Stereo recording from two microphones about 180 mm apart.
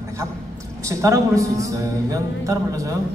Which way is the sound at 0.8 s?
15° right (ahead or behind).